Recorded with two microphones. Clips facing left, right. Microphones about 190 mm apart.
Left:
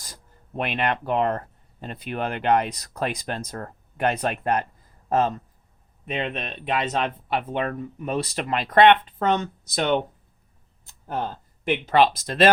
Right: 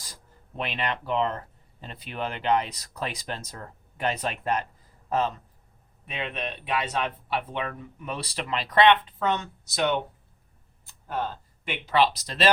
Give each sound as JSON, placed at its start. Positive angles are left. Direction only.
{"t": 0.0, "sound": "speech", "side_deg": 50}
{"t": 11.6, "sound": "speech", "side_deg": 50}